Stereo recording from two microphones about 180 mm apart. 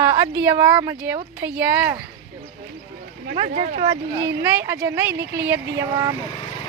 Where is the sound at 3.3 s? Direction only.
40° right (ahead or behind).